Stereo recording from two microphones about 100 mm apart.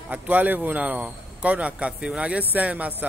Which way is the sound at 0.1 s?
15° right (ahead or behind).